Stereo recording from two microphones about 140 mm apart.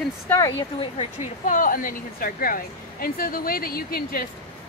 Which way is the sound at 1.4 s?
70° left (ahead or behind).